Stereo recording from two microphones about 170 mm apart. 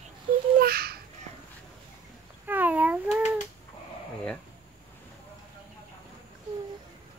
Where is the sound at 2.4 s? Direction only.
10° right (ahead or behind).